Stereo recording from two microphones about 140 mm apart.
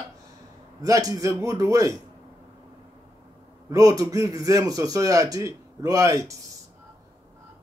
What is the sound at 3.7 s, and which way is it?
A man's voice, 25° right (ahead or behind).